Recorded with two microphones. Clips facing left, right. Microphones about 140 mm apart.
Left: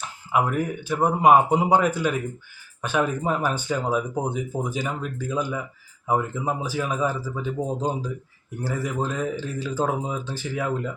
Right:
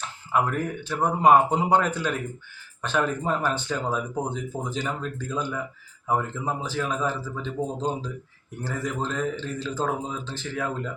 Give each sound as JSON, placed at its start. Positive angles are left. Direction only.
{"t": 0.0, "sound": "speech", "side_deg": 10}